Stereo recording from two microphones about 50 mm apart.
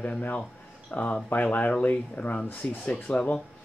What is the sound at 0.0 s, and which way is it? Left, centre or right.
Speech, left.